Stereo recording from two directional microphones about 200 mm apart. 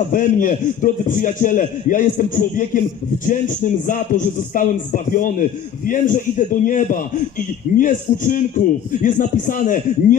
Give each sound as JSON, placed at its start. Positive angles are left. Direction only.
{"t": 0.1, "sound": "a man's voice", "side_deg": 40}